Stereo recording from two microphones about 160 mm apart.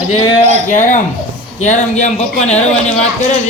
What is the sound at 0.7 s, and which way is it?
A man's voice, 50° left (ahead or behind).